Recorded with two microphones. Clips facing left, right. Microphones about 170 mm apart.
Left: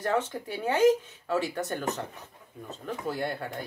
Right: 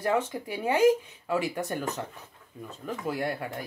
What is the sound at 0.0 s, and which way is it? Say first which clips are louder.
Speech: right 1 dB; 10° right (ahead or behind).